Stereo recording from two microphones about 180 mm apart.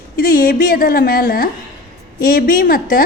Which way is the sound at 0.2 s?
55° left (ahead or behind).